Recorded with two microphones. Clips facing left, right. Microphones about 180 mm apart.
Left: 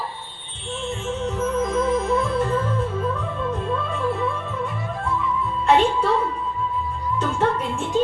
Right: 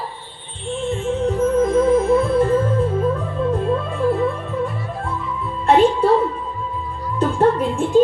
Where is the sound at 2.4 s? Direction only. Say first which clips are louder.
Right 6 dB; 45° right (ahead or behind).